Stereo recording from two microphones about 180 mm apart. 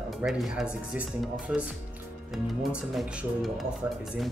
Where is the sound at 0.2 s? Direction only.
Centre (ahead or behind).